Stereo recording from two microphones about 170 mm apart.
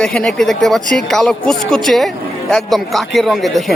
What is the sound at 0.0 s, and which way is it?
Speech, 5° left (ahead or behind).